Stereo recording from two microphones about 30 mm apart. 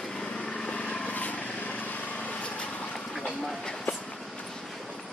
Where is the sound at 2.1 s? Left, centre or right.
Left.